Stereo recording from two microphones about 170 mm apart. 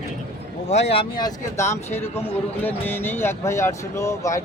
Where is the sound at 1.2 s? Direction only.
15° left (ahead or behind).